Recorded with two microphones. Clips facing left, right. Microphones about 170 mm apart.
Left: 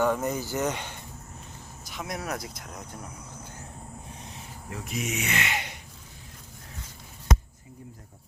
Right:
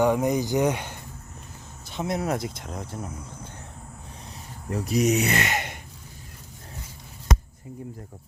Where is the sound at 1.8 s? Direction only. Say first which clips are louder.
Right 7 dB; 25° right (ahead or behind).